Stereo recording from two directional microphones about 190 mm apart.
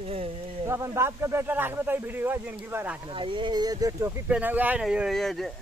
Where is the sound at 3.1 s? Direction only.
25° right (ahead or behind).